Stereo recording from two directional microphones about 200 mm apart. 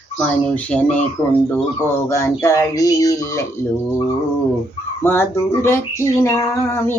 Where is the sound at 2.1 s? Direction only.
15° left (ahead or behind).